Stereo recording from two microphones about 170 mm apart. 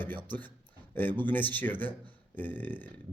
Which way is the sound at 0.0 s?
10° left (ahead or behind).